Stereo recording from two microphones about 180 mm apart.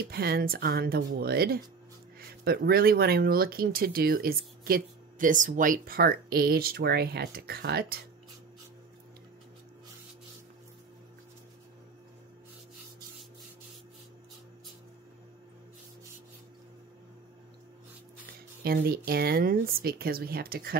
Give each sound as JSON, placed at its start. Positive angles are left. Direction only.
{"t": 0.0, "sound": "speech", "side_deg": -60}
{"t": 18.6, "sound": "speech", "side_deg": -55}